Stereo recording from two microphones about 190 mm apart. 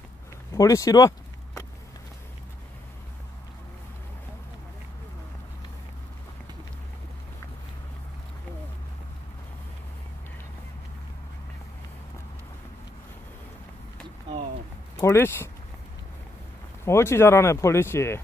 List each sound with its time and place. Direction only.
0.5 s a sound: 15° left (ahead or behind)
15.0 s speech: 15° left (ahead or behind)
16.8 s speech: 15° left (ahead or behind)